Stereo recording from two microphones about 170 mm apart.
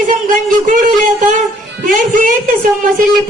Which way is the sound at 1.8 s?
50° right (ahead or behind).